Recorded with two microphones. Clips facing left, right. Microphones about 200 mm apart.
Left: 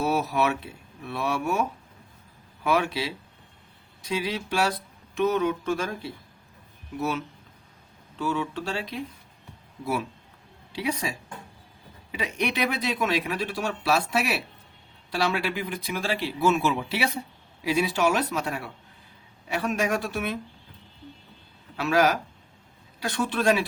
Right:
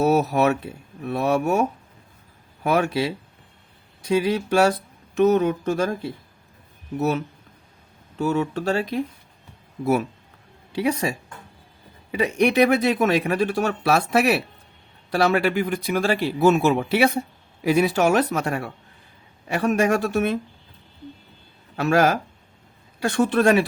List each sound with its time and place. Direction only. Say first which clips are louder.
0.0 s speech: right 6 dB; 45° right (ahead or behind)
2.6 s speech: right 4 dB; 45° right (ahead or behind)
4.1 s speech: right 8 dB; 50° right (ahead or behind)
8.2 s speech: right 6 dB; 45° right (ahead or behind)
21.8 s speech: right 4 dB; 50° right (ahead or behind)